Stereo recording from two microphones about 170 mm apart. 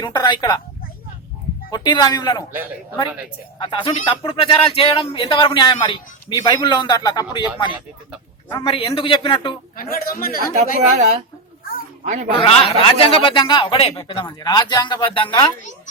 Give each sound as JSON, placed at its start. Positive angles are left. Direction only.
{"t": 0.0, "sound": "speech", "side_deg": 25}
{"t": 1.7, "sound": "speech", "side_deg": 25}
{"t": 3.6, "sound": "speech", "side_deg": 30}
{"t": 9.7, "sound": "a man's voice", "side_deg": 60}
{"t": 10.5, "sound": "speech", "side_deg": -45}
{"t": 12.4, "sound": "speech", "side_deg": 30}